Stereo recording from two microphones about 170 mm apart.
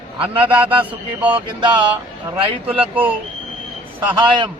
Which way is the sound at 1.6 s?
25° right (ahead or behind).